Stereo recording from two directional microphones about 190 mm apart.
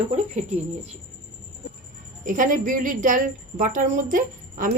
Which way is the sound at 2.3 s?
45° right (ahead or behind).